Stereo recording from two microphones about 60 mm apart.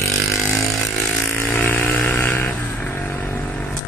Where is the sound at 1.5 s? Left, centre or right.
Left.